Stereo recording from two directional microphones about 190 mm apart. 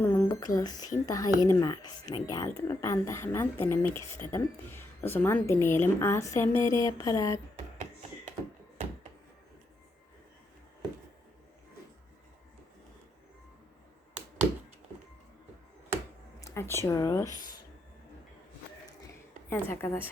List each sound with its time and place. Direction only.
0.0 s a woman's voice: 10° left (ahead or behind)
16.4 s a sound: 15° left (ahead or behind)
19.5 s a woman's voice: 10° left (ahead or behind)